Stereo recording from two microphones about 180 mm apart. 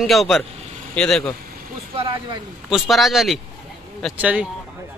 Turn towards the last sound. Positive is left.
turn(degrees=-5)  # may be behind; listen again after turning